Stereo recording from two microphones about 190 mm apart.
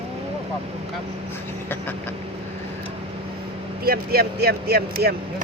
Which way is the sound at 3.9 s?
55° right (ahead or behind).